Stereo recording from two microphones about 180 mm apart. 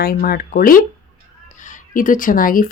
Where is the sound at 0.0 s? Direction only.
55° left (ahead or behind).